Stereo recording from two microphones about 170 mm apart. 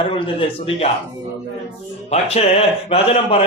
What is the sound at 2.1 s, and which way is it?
A man's voice, 35° left (ahead or behind).